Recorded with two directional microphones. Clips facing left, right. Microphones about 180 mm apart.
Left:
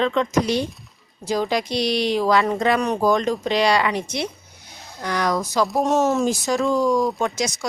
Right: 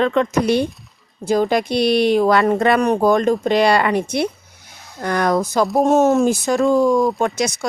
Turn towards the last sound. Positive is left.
turn(degrees=-60)  # may be behind; listen again after turning